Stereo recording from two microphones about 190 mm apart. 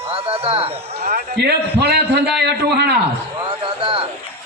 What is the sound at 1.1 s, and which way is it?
A man's voice, 55° right (ahead or behind).